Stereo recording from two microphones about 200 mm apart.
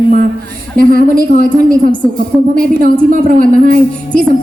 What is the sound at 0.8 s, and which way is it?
A woman's voice, 45° right (ahead or behind).